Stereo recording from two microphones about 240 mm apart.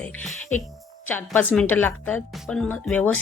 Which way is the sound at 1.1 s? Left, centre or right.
Centre.